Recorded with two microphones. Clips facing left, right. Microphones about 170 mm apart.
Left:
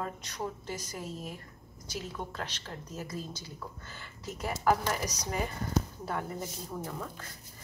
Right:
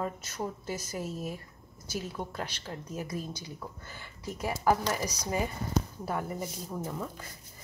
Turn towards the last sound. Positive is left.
turn(degrees=-10)  # may be behind; listen again after turning